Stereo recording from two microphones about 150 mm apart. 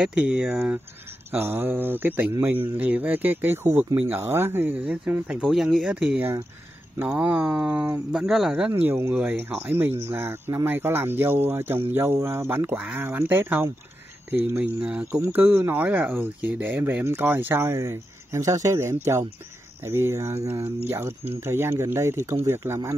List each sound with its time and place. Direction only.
0.0 s speech: 5° right (ahead or behind)